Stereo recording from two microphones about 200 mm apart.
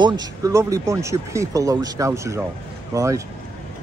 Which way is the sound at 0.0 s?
20° right (ahead or behind).